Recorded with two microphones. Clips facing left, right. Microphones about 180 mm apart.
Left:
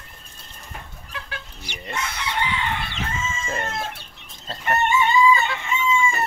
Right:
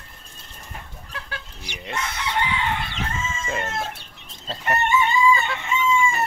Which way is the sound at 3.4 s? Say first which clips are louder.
Right 1 dB; centre (ahead or behind).